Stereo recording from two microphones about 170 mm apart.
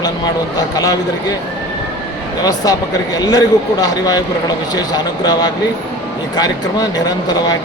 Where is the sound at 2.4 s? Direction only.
20° left (ahead or behind).